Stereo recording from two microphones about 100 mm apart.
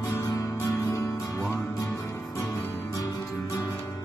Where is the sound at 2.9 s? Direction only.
35° left (ahead or behind).